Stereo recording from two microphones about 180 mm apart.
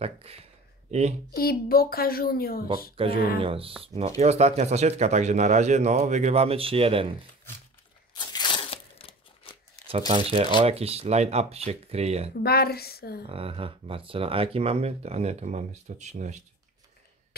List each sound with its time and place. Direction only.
0.0 s speech: 35° right (ahead or behind)
1.3 s speech: 55° left (ahead or behind)
3.3 s speech: 30° right (ahead or behind)
8.1 s tearing: 25° left (ahead or behind)
9.8 s speech: 30° right (ahead or behind)
12.4 s speech: 60° left (ahead or behind)
13.3 s speech: 30° right (ahead or behind)